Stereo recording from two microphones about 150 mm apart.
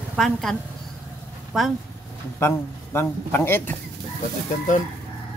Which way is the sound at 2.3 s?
15° left (ahead or behind).